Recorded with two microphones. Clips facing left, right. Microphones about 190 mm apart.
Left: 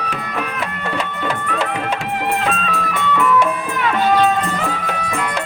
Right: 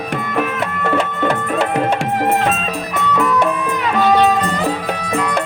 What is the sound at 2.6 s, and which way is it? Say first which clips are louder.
Music: right 1 dB; 40° right (ahead or behind).